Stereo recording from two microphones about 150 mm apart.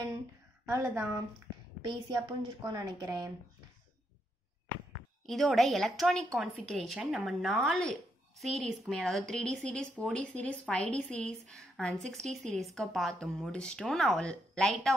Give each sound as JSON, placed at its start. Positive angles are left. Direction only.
{"t": 0.7, "sound": "a woman's voice", "side_deg": -20}
{"t": 1.9, "sound": "a woman's voice", "side_deg": -30}
{"t": 5.2, "sound": "speech", "side_deg": 0}